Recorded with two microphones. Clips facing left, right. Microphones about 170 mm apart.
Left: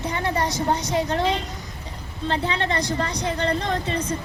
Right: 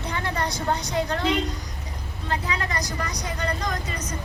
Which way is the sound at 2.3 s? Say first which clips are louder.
Left 4 dB; 30° left (ahead or behind).